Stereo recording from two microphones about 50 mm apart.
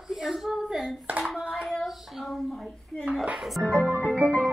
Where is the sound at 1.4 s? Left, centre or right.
Centre.